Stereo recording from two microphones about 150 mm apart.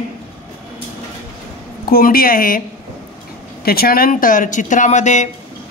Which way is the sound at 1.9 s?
80° left.